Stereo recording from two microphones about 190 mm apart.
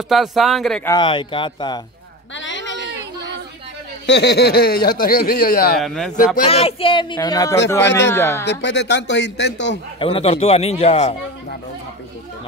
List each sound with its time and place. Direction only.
0.1 s speech: centre (ahead or behind)
0.8 s speech: 25° left (ahead or behind)
2.3 s a sound: 75° left (ahead or behind)
4.0 s speech: 65° left (ahead or behind); by 5.8 s 50° left (ahead or behind)
5.8 s speech: centre (ahead or behind)
6.4 s speech: 30° left (ahead or behind); by 8.5 s 15° left (ahead or behind)
8.5 s speech: 65° left (ahead or behind)
9.9 s a man's voice: 30° left (ahead or behind)